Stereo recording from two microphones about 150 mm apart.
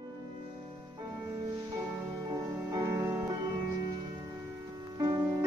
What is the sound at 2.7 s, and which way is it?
Music, 20° right (ahead or behind).